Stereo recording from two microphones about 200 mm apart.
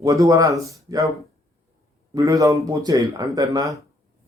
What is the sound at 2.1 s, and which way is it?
Speech, 15° right (ahead or behind).